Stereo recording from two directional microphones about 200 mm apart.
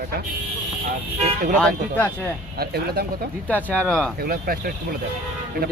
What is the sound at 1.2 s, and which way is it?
Speech, 40° right (ahead or behind).